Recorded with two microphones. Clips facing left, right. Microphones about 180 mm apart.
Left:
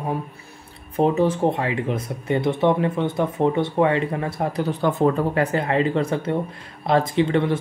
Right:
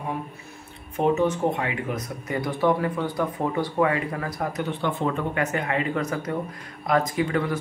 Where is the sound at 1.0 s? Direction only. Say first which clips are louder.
Left 3 dB; 30° left (ahead or behind).